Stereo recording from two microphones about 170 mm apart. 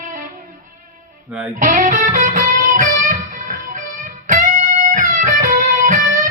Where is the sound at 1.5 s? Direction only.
50° right (ahead or behind).